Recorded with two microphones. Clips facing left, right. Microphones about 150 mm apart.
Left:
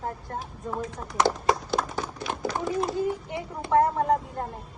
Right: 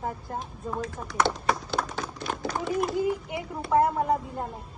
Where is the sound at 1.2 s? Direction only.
65° right (ahead or behind).